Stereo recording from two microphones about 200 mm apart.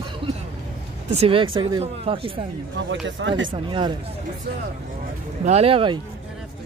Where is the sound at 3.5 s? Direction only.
25° right (ahead or behind).